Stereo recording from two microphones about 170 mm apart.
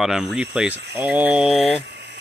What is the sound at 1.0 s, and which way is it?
Mantra, 10° right (ahead or behind).